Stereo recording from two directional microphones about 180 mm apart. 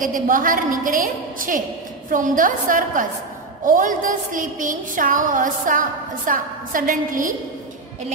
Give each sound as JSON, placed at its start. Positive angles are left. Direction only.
{"t": 0.0, "sound": "a woman's voice", "side_deg": -50}